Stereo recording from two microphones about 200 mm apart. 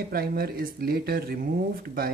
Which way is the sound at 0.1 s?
50° right (ahead or behind).